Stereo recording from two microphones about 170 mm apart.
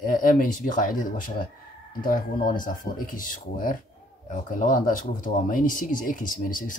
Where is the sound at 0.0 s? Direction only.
55° left (ahead or behind).